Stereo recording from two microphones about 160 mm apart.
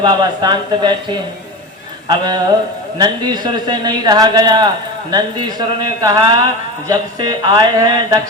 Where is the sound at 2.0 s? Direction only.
25° right (ahead or behind).